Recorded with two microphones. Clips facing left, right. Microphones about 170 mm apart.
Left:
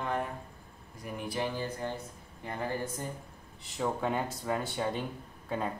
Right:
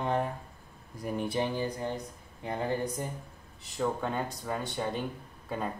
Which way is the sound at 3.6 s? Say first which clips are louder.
Right 1 dB; centre (ahead or behind).